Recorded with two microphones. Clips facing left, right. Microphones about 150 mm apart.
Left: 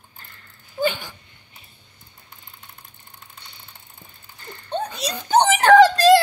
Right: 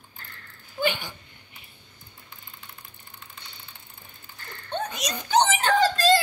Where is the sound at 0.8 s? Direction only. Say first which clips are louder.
Left 3 dB; centre (ahead or behind).